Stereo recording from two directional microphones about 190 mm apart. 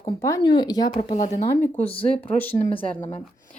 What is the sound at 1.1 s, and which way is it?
Speech, 35° left (ahead or behind).